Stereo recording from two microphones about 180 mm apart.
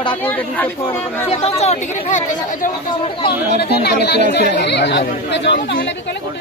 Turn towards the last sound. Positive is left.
turn(degrees=80)